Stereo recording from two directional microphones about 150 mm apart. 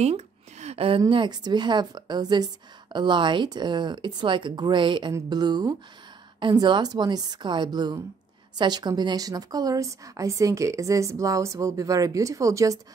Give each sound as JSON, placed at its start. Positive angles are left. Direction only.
{"t": 0.0, "sound": "a woman's voice", "side_deg": -45}